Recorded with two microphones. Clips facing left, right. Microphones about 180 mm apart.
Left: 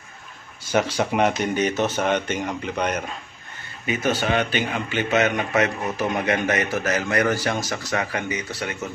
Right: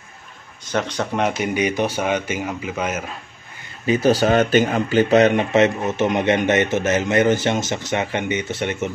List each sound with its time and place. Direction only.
0.7 s speech: 10° left (ahead or behind)
1.4 s speech: 10° right (ahead or behind)
3.8 s speech: 35° right (ahead or behind)